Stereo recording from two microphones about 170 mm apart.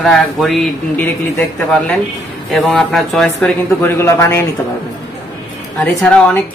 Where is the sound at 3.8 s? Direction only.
15° left (ahead or behind).